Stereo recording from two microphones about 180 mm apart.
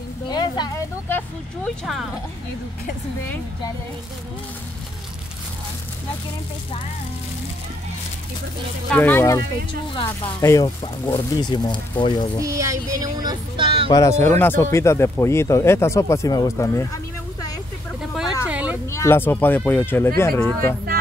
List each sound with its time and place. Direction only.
0.3 s a sound: 25° left (ahead or behind)
1.0 s vehicle: 10° left (ahead or behind)
8.9 s speech: 10° left (ahead or behind)
12.4 s speech: 20° right (ahead or behind)
13.8 s speech: 20° left (ahead or behind)
18.1 s vehicle: 5° right (ahead or behind)
18.9 s speech: 15° left (ahead or behind)